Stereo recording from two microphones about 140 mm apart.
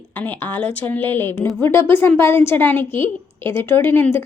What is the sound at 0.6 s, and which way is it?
A woman's voice, 10° left (ahead or behind).